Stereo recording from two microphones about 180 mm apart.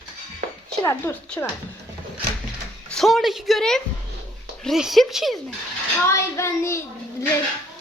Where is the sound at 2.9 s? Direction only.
Centre (ahead or behind).